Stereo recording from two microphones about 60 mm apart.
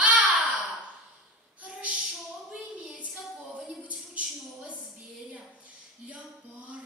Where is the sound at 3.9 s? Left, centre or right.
Right.